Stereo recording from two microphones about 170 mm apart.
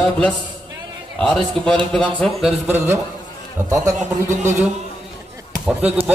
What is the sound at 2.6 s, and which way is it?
Speech, 10° right (ahead or behind).